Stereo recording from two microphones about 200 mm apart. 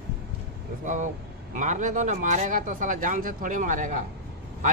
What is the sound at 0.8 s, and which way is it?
Speech, 40° right (ahead or behind).